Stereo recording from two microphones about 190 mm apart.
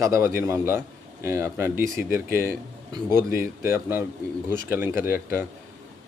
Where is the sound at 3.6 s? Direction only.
15° right (ahead or behind).